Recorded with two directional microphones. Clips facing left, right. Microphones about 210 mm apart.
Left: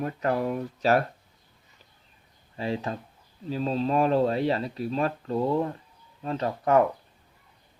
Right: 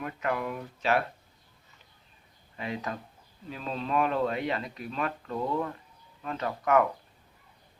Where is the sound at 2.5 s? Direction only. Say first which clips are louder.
Left 5 dB; 30° left (ahead or behind).